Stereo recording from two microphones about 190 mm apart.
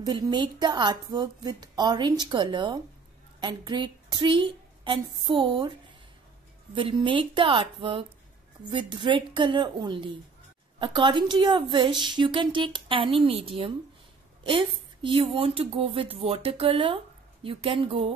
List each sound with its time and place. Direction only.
0.0 s a woman's voice: 25° right (ahead or behind)
6.7 s speech: 25° right (ahead or behind)